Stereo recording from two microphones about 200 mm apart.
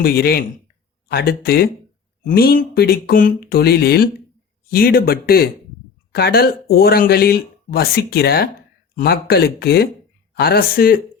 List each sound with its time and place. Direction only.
0.0 s speech: 50° left (ahead or behind)